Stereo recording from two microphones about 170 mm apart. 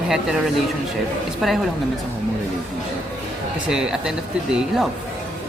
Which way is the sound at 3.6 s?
5° right (ahead or behind).